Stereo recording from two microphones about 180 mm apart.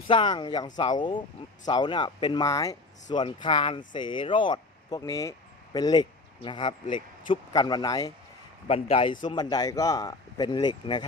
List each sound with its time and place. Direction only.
0.1 s speech: 25° left (ahead or behind)
8.6 s a man's voice: 30° left (ahead or behind)